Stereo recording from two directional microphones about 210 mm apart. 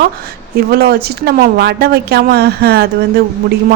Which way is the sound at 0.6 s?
45° right (ahead or behind).